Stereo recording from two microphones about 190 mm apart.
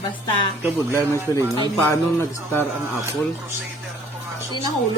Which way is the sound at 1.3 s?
20° left (ahead or behind).